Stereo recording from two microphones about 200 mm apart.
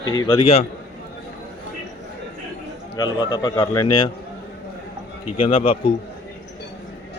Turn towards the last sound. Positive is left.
turn(degrees=30)  # may be behind; listen again after turning